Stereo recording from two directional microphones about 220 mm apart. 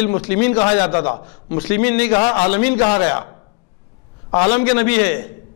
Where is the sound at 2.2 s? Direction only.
35° left (ahead or behind).